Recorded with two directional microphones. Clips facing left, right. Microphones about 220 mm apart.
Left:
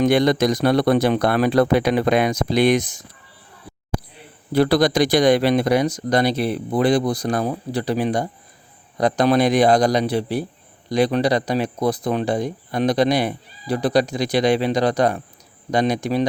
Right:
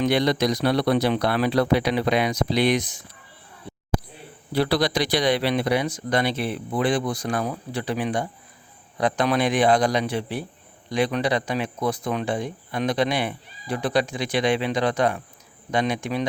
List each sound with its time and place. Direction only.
0.0 s a man's voice: 50° left (ahead or behind)
4.5 s speech: 45° left (ahead or behind)